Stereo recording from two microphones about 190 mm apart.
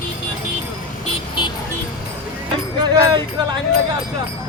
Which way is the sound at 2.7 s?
25° right (ahead or behind).